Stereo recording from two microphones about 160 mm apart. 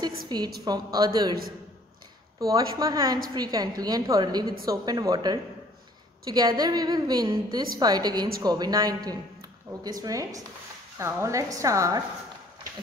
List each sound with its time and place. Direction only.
0.3 s a woman's voice: 25° right (ahead or behind)
2.4 s a woman's voice: 20° right (ahead or behind)